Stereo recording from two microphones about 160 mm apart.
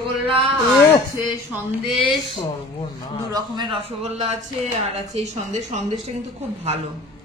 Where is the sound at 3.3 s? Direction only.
25° right (ahead or behind).